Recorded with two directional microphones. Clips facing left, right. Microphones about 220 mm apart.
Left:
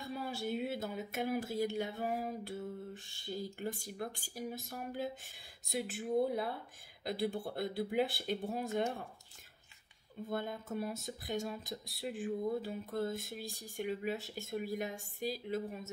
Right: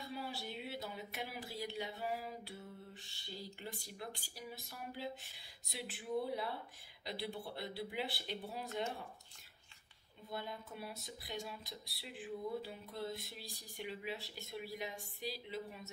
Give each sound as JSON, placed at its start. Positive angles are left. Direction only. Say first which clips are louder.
{"t": 0.1, "sound": "speech", "louder": "left 8 dB", "side_deg": 50}
{"t": 10.3, "sound": "speech", "louder": "left 7 dB", "side_deg": 50}